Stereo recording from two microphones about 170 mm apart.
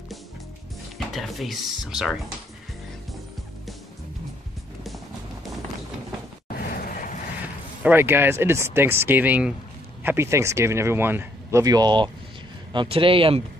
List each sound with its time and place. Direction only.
0.9 s speech: centre (ahead or behind)
6.5 s a sound: 60° left (ahead or behind)
7.8 s a man's voice: 15° right (ahead or behind); by 13.4 s 30° right (ahead or behind)